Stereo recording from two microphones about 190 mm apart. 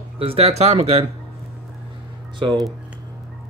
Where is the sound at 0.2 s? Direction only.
30° right (ahead or behind).